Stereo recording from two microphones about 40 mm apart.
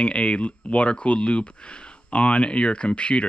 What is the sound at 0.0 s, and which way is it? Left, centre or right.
Speech, left.